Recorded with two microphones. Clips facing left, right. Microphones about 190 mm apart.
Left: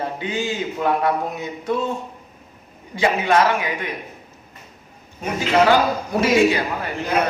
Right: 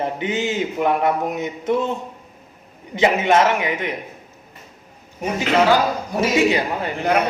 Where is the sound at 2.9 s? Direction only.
20° right (ahead or behind).